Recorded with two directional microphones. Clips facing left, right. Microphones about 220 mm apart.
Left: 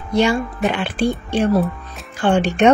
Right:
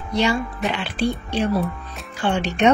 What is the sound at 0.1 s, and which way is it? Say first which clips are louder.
Speech: left 4 dB; 50° left (ahead or behind).